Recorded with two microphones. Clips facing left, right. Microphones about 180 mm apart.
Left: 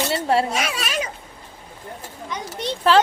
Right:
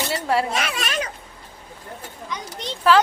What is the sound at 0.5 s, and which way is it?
Speech, 10° left (ahead or behind).